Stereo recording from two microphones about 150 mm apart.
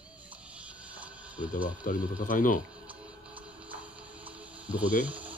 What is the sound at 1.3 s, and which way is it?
Speech, 10° right (ahead or behind).